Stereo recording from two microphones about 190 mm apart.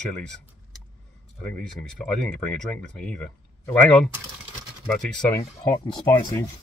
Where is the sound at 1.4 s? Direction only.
5° left (ahead or behind).